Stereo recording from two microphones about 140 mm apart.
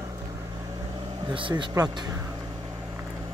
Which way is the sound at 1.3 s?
35° right (ahead or behind).